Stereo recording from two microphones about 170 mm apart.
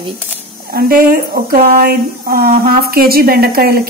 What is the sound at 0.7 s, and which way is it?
A woman's voice, 60° right (ahead or behind).